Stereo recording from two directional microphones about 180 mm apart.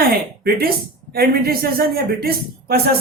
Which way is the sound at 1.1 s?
55° right (ahead or behind).